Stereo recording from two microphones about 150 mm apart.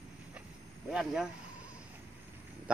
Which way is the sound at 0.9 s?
5° right (ahead or behind).